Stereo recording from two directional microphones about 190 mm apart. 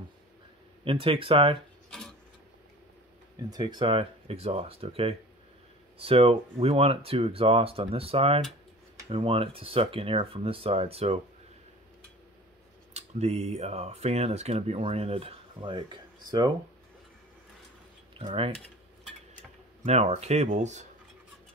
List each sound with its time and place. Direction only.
0.8 s speech: 30° right (ahead or behind)
1.9 s a sound: centre (ahead or behind)
3.4 s speech: 20° right (ahead or behind)
12.9 s speech: 35° right (ahead or behind)
18.1 s speech: 30° right (ahead or behind)
19.8 s speech: 35° right (ahead or behind)